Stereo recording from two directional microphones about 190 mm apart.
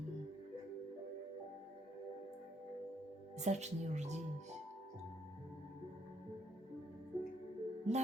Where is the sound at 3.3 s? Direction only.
35° right (ahead or behind).